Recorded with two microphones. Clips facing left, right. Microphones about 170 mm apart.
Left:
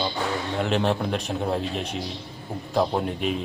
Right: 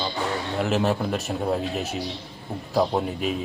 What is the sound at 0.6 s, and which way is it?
A man's voice, 5° right (ahead or behind).